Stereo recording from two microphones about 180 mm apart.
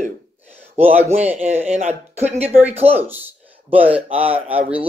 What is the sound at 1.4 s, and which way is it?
Speech, 35° right (ahead or behind).